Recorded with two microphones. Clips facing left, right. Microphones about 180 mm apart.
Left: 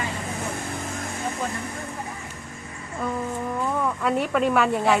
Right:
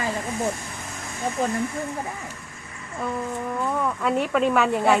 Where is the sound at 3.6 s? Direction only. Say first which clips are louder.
Even; centre (ahead or behind).